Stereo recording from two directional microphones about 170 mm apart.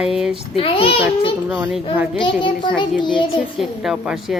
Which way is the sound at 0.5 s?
35° left (ahead or behind).